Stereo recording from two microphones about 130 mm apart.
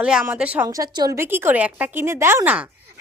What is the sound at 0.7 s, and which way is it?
Speech, 30° right (ahead or behind).